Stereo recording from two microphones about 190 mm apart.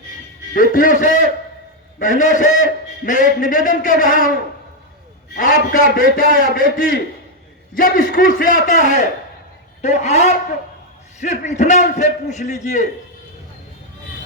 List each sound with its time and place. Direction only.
0.5 s a man's voice: 45° left (ahead or behind)
5.3 s a man's voice: 45° left (ahead or behind)